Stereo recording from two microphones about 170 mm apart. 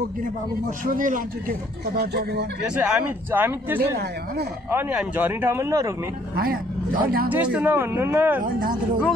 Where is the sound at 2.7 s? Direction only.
5° right (ahead or behind).